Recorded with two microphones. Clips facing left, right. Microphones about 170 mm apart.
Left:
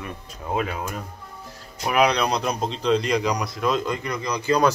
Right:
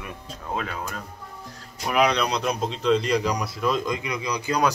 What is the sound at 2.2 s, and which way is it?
Speech, 45° left (ahead or behind).